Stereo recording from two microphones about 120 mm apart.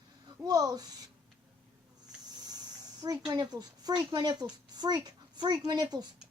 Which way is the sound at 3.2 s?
35° right (ahead or behind).